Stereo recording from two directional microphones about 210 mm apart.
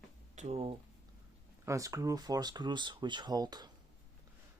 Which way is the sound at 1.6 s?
15° right (ahead or behind).